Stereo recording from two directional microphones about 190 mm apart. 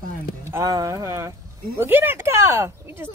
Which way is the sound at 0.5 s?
15° right (ahead or behind).